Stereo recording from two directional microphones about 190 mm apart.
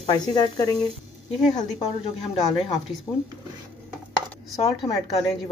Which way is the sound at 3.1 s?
5° left (ahead or behind).